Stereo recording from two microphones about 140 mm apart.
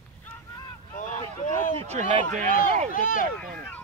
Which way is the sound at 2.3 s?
65° right (ahead or behind).